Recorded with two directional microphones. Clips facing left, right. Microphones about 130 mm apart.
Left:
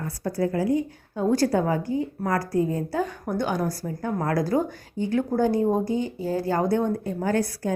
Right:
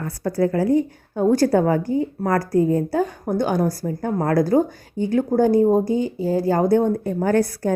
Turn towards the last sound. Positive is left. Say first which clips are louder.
# right 5 dB
turn(degrees=-50)  # may be behind; listen again after turning